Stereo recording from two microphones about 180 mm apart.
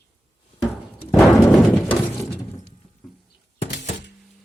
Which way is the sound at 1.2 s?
Centre (ahead or behind).